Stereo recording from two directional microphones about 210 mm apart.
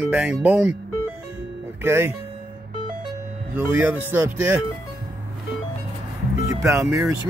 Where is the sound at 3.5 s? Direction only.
10° right (ahead or behind).